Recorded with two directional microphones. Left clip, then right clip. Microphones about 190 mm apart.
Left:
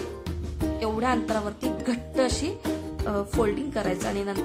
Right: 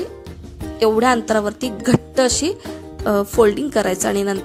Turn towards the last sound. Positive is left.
turn(degrees=-40)  # may be behind; listen again after turning